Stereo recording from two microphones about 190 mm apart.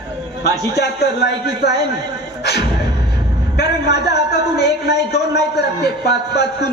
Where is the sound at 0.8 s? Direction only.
60° left (ahead or behind).